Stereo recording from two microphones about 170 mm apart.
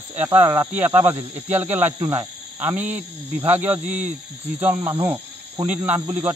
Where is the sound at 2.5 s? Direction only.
10° right (ahead or behind).